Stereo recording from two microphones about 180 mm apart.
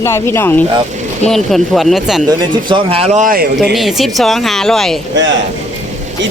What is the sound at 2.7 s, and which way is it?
Speech, 35° right (ahead or behind).